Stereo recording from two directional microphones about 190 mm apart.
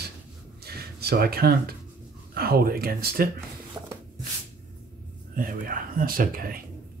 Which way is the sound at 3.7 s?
15° right (ahead or behind).